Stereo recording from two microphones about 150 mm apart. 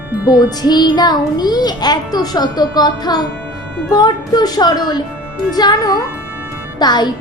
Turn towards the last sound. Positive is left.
turn(degrees=30)  # may be behind; listen again after turning